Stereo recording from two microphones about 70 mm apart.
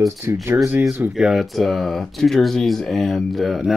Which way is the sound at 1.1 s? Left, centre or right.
Centre.